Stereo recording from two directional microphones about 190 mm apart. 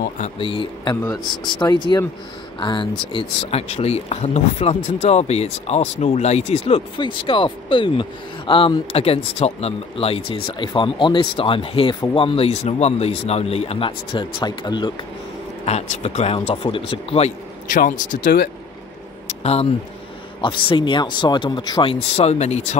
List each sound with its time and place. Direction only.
0.2 s speech: 30° left (ahead or behind)
15.6 s speech: 35° left (ahead or behind)
17.6 s speech: 45° left (ahead or behind)
19.2 s a sound: 35° left (ahead or behind)
20.3 s speech: 25° left (ahead or behind)
22.1 s speech: 35° left (ahead or behind)